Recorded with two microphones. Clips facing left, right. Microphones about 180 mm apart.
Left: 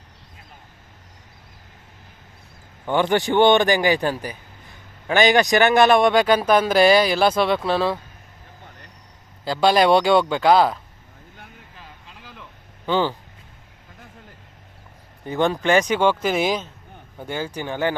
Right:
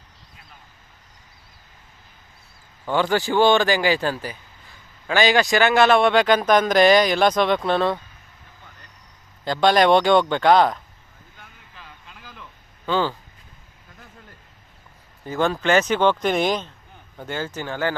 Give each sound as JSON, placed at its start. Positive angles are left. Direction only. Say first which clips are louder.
{"t": 2.8, "sound": "a man's voice", "louder": "left 1 dB", "side_deg": 20}
{"t": 9.4, "sound": "a man's voice", "louder": "even", "side_deg": 5}
{"t": 12.2, "sound": "a sound", "louder": "left 1 dB", "side_deg": 20}
{"t": 15.3, "sound": "a man's voice", "louder": "left 1 dB", "side_deg": 15}